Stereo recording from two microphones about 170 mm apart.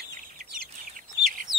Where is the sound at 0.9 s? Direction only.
55° right (ahead or behind).